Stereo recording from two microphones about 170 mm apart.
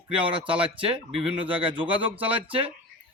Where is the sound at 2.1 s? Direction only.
10° right (ahead or behind).